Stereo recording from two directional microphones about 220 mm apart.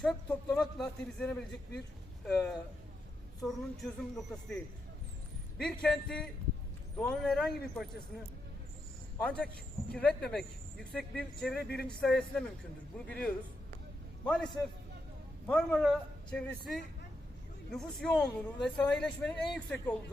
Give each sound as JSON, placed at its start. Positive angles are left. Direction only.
{"t": 0.5, "sound": "speech", "side_deg": 0}
{"t": 5.6, "sound": "speech", "side_deg": 0}
{"t": 11.5, "sound": "speech", "side_deg": 45}
{"t": 11.9, "sound": "speech", "side_deg": 5}